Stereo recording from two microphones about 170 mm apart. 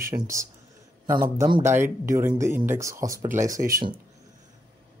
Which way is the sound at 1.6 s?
15° right (ahead or behind).